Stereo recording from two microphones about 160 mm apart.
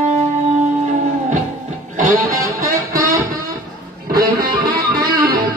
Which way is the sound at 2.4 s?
20° right (ahead or behind).